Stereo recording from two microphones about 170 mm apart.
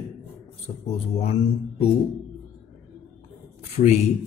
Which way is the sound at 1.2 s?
35° left (ahead or behind).